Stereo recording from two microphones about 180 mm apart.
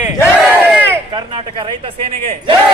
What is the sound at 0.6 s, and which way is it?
Battle cry, 10° right (ahead or behind).